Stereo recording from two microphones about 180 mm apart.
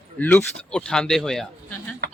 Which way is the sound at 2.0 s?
65° right (ahead or behind).